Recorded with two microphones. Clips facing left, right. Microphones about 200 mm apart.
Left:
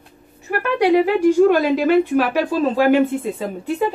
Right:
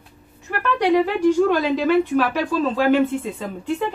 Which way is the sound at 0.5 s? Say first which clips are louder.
Left 3 dB; 35° left (ahead or behind).